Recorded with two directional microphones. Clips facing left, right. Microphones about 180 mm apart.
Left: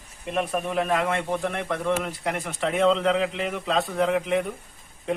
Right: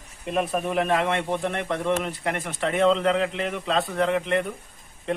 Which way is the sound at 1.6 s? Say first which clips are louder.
Right 1 dB; 15° right (ahead or behind).